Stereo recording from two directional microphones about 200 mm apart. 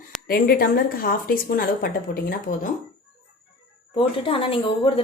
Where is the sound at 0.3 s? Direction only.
50° left (ahead or behind).